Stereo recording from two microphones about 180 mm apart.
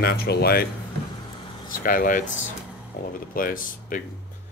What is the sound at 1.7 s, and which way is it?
Speech, 50° left (ahead or behind).